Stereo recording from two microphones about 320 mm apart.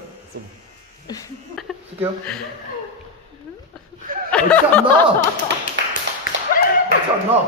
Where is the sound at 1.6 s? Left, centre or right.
Centre.